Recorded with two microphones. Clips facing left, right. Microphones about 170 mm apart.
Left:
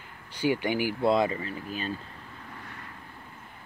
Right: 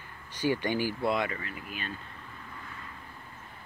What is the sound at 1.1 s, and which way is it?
Speech, 25° left (ahead or behind).